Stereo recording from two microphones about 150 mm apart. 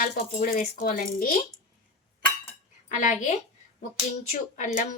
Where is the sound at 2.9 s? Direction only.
55° left (ahead or behind).